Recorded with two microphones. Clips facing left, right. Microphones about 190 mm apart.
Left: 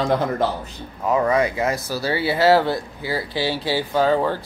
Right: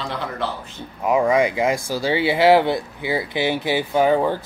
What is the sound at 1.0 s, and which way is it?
Speech, 15° right (ahead or behind).